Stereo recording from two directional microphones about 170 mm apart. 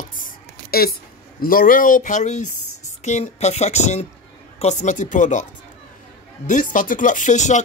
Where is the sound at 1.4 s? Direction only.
55° left (ahead or behind).